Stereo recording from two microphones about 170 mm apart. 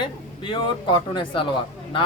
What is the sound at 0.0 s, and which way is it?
A man's voice, 30° left (ahead or behind).